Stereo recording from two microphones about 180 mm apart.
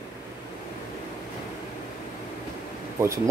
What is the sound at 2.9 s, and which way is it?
Speech, 15° right (ahead or behind).